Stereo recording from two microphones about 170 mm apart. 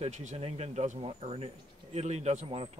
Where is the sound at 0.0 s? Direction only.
40° right (ahead or behind).